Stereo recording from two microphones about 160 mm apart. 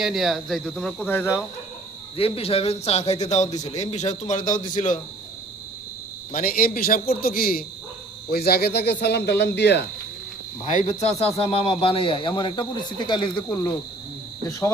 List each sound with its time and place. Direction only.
0.0 s speech: centre (ahead or behind); by 1.5 s 15° left (ahead or behind)
2.1 s a man's voice: 35° left (ahead or behind); by 4.9 s 55° left (ahead or behind)
6.3 s a man's voice: 65° left (ahead or behind)
8.3 s speech: 85° left
10.6 s speech: 45° left (ahead or behind)
11.5 s speech: 35° left (ahead or behind)